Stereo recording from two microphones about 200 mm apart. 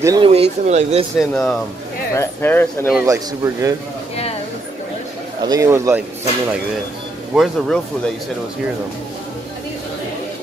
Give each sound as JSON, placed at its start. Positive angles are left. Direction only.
{"t": 0.0, "sound": "speech", "side_deg": -20}
{"t": 0.3, "sound": "speech", "side_deg": -30}
{"t": 1.1, "sound": "speech", "side_deg": 0}
{"t": 2.9, "sound": "speech", "side_deg": -10}
{"t": 5.4, "sound": "speech", "side_deg": -15}
{"t": 7.3, "sound": "speech", "side_deg": 5}